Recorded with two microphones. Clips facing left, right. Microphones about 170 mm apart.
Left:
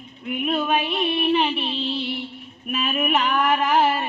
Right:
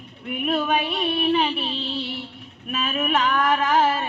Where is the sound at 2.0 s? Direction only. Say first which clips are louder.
Left 2 dB; 40° right (ahead or behind).